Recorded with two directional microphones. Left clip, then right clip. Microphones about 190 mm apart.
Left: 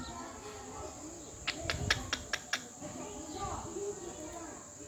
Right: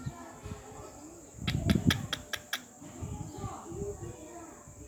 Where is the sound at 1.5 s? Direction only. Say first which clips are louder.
Right 2 dB; 5° right (ahead or behind).